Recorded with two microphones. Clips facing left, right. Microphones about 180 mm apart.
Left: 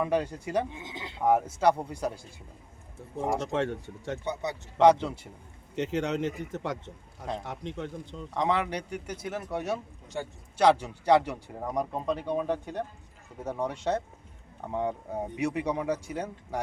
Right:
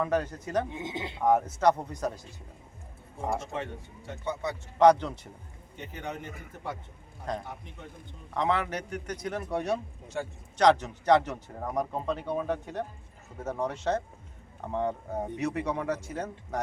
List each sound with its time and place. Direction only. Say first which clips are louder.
0.0 s speech: left 1 dB; 10° left (ahead or behind)
0.8 s speech: right 6 dB; 20° right (ahead or behind)
1.2 s speech: even; 10° left (ahead or behind)
3.4 s a man's voice: left 7 dB; 80° left
4.3 s speech: right 4 dB; 15° left (ahead or behind)
5.7 s a man's voice: left 10 dB; 80° left
8.4 s speech: left 1 dB; 15° left (ahead or behind)